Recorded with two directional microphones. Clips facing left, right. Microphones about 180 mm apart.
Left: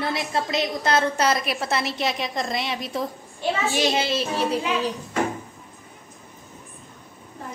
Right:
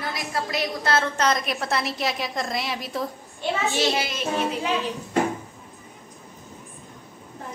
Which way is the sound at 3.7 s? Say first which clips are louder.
Left 2 dB; 25° left (ahead or behind).